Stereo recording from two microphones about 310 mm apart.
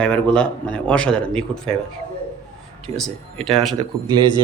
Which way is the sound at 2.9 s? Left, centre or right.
Right.